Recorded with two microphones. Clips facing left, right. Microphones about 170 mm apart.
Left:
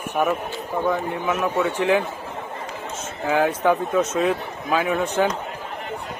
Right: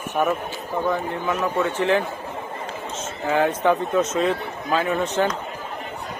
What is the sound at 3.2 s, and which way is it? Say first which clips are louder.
Speech: even; 5° left (ahead or behind).